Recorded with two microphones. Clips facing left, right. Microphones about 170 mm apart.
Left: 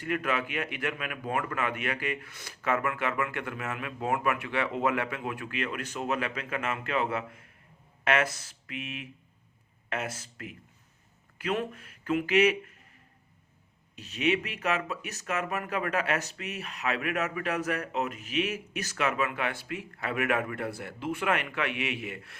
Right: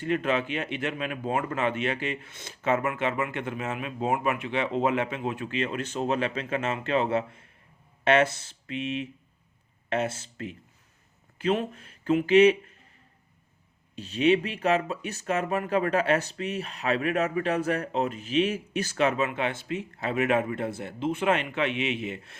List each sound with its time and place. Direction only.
0.0 s speech: 25° right (ahead or behind)
13.9 s speech: 30° right (ahead or behind)